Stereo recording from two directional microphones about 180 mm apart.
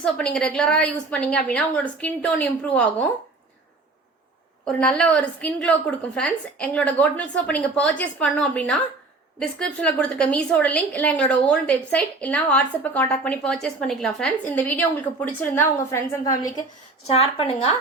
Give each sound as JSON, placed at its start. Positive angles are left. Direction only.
{"t": 0.0, "sound": "a woman's voice", "side_deg": 5}
{"t": 4.6, "sound": "a woman's voice", "side_deg": 5}
{"t": 17.1, "sound": "a woman's voice", "side_deg": 35}